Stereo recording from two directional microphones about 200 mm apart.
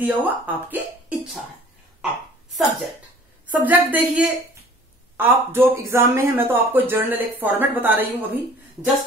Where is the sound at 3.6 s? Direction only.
10° right (ahead or behind).